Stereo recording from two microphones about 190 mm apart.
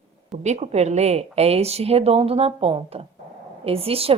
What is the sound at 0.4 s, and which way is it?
A woman's voice, 35° right (ahead or behind).